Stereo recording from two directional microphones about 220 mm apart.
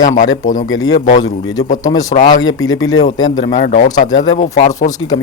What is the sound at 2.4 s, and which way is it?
Speech, 60° left (ahead or behind).